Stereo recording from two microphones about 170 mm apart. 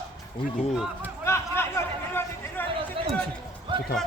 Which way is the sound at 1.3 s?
15° left (ahead or behind).